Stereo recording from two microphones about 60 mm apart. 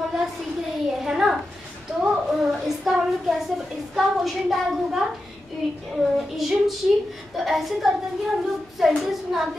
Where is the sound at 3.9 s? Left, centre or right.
Centre.